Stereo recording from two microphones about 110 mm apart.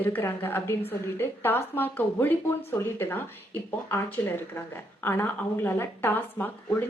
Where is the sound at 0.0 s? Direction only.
20° left (ahead or behind).